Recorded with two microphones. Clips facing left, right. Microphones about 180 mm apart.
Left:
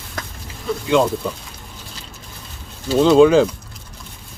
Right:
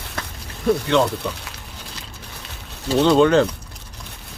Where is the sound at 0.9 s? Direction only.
5° left (ahead or behind).